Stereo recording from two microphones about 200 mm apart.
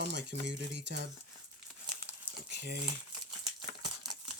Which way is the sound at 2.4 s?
60° right (ahead or behind).